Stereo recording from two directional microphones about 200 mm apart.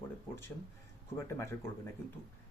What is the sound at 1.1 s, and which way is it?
Speech, 15° left (ahead or behind).